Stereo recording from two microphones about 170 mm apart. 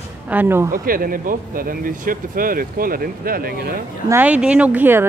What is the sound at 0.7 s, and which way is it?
Speech, 55° right (ahead or behind).